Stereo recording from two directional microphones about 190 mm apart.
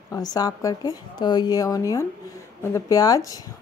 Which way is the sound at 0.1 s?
20° left (ahead or behind).